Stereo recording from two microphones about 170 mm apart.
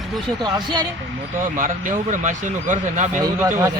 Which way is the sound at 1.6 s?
50° right (ahead or behind).